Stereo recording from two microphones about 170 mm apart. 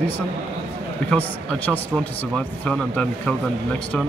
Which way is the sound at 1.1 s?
10° left (ahead or behind).